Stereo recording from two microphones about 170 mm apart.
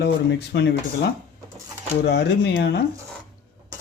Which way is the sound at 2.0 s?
75° left (ahead or behind).